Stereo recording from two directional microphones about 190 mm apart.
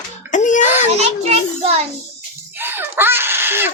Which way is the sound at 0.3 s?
40° left (ahead or behind).